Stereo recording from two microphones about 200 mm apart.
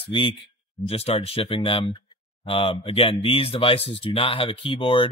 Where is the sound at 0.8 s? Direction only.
30° left (ahead or behind).